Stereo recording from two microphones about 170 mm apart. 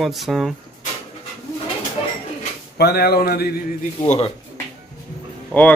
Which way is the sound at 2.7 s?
70° left (ahead or behind).